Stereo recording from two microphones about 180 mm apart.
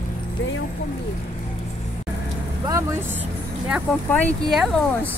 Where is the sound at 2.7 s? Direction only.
15° right (ahead or behind).